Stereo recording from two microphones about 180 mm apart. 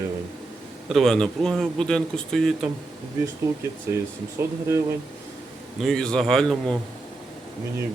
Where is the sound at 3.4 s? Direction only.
20° right (ahead or behind).